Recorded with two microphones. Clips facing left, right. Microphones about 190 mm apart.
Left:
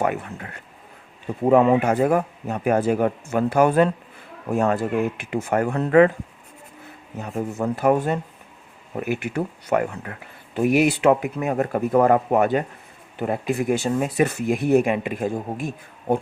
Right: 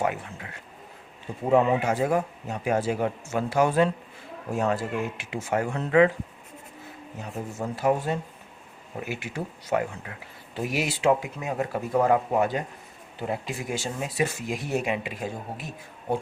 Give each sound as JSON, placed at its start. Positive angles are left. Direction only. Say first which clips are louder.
{"t": 0.0, "sound": "speech", "louder": "left 4 dB", "side_deg": 55}
{"t": 7.2, "sound": "speech", "louder": "left 7 dB", "side_deg": 60}